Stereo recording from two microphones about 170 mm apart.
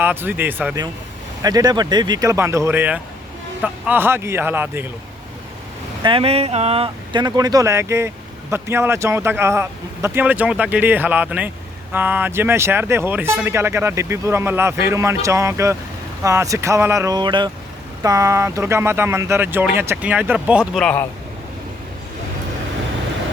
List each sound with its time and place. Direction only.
0.0 s speech: 10° right (ahead or behind)
1.4 s speech: 20° right (ahead or behind)
6.0 s speech: 30° right (ahead or behind); by 20.8 s 5° right (ahead or behind)
20.8 s a man's voice: 15° left (ahead or behind)